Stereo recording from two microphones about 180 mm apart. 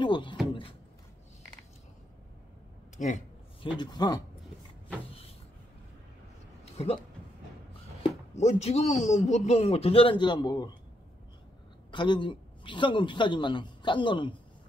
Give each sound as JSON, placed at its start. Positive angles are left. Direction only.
{"t": 0.0, "sound": "a sound", "side_deg": 25}
{"t": 3.0, "sound": "a man's voice", "side_deg": 45}
{"t": 3.7, "sound": "a man's voice", "side_deg": 25}
{"t": 6.6, "sound": "a sound", "side_deg": 35}
{"t": 8.4, "sound": "a man's voice", "side_deg": 35}
{"t": 11.9, "sound": "a man's voice", "side_deg": 25}